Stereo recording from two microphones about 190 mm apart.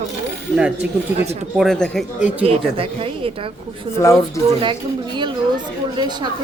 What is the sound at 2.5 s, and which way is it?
Speech, 30° right (ahead or behind).